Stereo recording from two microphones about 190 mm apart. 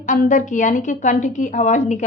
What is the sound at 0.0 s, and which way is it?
A woman's voice, 40° left (ahead or behind).